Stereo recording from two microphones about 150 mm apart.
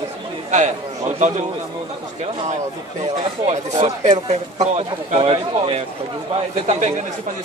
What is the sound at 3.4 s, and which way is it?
Speech, 50° right (ahead or behind).